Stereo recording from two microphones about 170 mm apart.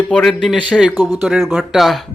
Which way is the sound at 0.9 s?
20° left (ahead or behind).